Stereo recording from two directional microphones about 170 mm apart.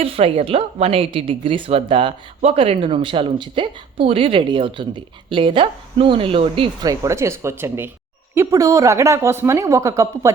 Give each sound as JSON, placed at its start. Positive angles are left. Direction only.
{"t": 0.0, "sound": "speech", "side_deg": -35}
{"t": 7.0, "sound": "a woman's voice", "side_deg": -15}